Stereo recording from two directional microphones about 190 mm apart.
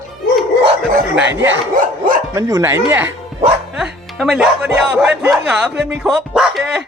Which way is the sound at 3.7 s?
5° right (ahead or behind).